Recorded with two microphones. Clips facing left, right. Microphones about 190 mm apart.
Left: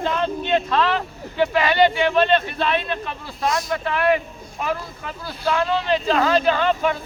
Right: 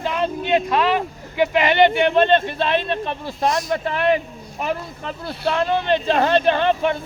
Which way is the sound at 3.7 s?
40° right (ahead or behind).